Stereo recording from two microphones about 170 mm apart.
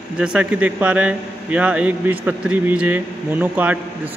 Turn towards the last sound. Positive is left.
turn(degrees=-10)  # may be behind; listen again after turning